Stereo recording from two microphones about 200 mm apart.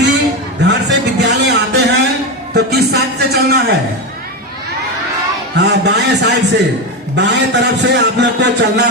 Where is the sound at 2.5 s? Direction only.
55° right (ahead or behind).